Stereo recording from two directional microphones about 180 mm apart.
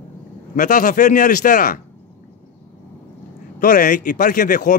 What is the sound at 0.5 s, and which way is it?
Speech, 45° left (ahead or behind).